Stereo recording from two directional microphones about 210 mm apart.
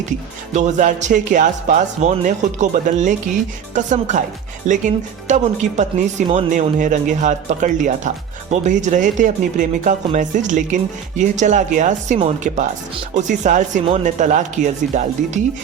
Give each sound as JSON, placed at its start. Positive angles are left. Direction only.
{"t": 0.5, "sound": "speech", "side_deg": -35}